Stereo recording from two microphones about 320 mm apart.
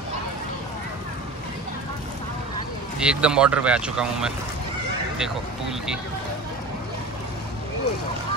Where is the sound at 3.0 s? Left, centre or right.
Centre.